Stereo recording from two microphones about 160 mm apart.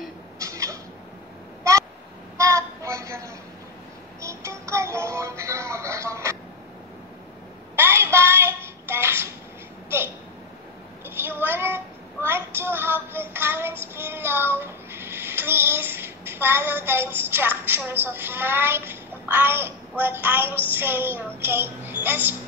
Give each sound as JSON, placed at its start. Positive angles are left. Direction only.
{"t": 0.4, "sound": "cat", "side_deg": -20}
{"t": 1.6, "sound": "a sound", "side_deg": -20}
{"t": 2.3, "sound": "child singing", "side_deg": -20}
{"t": 4.2, "sound": "music", "side_deg": -20}
{"t": 7.7, "sound": "child singing", "side_deg": -15}
{"t": 9.8, "sound": "a sound", "side_deg": -15}
{"t": 11.1, "sound": "child singing", "side_deg": -15}
{"t": 20.7, "sound": "music", "side_deg": -15}
{"t": 21.4, "sound": "a sound", "side_deg": -15}